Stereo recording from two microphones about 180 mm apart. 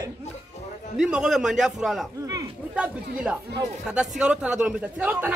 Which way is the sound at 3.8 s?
5° right (ahead or behind).